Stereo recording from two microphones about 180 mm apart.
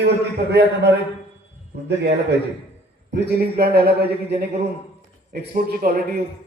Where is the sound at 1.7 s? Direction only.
65° right (ahead or behind).